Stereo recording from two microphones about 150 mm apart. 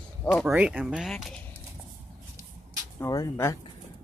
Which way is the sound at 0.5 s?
10° right (ahead or behind).